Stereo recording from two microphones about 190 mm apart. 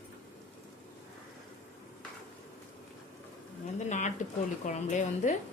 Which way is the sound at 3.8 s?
40° left (ahead or behind).